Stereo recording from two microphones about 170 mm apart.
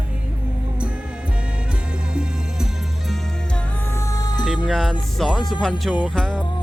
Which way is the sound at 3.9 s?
15° left (ahead or behind).